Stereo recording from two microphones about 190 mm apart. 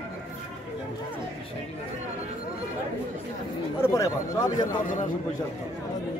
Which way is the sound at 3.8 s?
15° left (ahead or behind).